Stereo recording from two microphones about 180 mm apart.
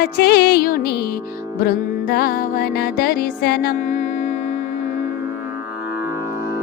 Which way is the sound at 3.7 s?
40° left (ahead or behind).